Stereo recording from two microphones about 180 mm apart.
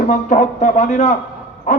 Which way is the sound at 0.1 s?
45° left (ahead or behind).